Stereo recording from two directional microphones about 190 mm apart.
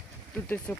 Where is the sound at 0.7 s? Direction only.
10° left (ahead or behind).